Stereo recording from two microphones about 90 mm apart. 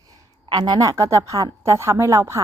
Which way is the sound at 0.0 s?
60° right (ahead or behind).